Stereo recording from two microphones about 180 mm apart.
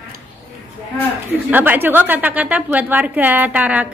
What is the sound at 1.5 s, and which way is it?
A woman's voice, 10° right (ahead or behind).